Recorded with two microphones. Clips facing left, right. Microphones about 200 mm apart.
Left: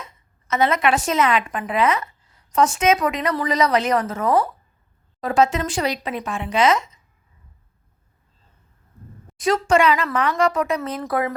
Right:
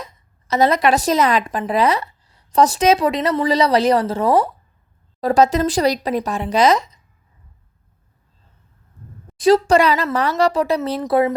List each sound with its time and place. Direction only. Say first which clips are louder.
0.0 s a woman's voice: right 5 dB; 35° right (ahead or behind)
9.4 s speech: right 4 dB; 35° right (ahead or behind)
11.0 s speech: right 6 dB; 25° right (ahead or behind)